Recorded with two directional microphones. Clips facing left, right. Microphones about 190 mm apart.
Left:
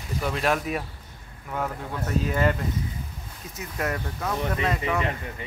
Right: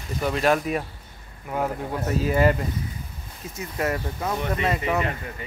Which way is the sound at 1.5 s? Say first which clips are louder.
Right 4 dB; 20° right (ahead or behind).